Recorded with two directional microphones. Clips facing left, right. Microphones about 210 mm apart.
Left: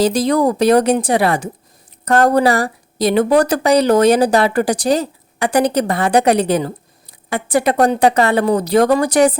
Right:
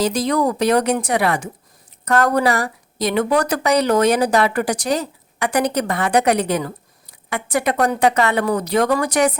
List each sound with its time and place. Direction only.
0.0 s speech: 30° left (ahead or behind)